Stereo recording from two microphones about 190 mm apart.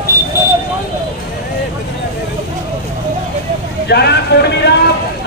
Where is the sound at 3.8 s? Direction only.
60° left (ahead or behind).